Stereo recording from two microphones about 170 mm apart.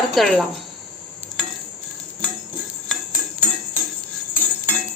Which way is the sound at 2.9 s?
5° left (ahead or behind).